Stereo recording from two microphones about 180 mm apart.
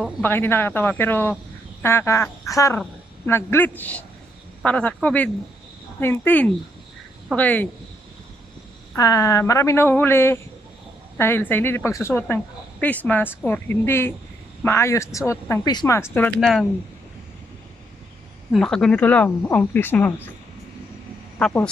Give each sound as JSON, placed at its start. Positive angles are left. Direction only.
{"t": 0.2, "sound": "speech", "side_deg": 10}
{"t": 8.9, "sound": "speech", "side_deg": 20}
{"t": 16.3, "sound": "speech", "side_deg": 0}
{"t": 18.5, "sound": "speech", "side_deg": 5}
{"t": 21.4, "sound": "speech", "side_deg": 5}